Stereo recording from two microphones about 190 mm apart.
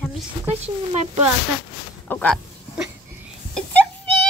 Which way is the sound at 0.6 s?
35° right (ahead or behind).